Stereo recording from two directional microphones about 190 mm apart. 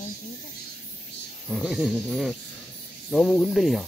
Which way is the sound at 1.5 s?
5° right (ahead or behind).